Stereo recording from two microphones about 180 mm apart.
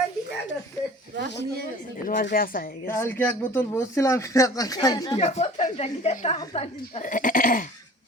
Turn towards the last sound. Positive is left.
turn(degrees=50)  # may be behind; listen again after turning